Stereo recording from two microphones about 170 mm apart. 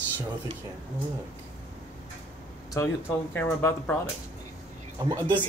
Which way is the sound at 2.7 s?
10° left (ahead or behind).